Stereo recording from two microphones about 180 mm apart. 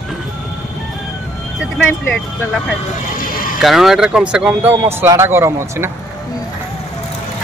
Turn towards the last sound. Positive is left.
turn(degrees=-15)  # may be behind; listen again after turning